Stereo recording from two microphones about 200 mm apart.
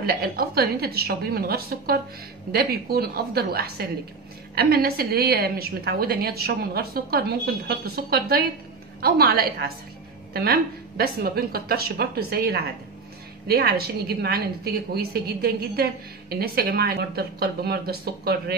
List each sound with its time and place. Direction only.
0.0 s a woman's voice: 50° right (ahead or behind)